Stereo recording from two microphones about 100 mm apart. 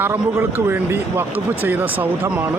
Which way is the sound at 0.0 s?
25° right (ahead or behind).